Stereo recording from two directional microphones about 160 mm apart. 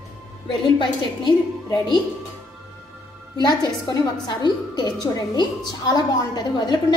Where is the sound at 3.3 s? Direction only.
25° left (ahead or behind).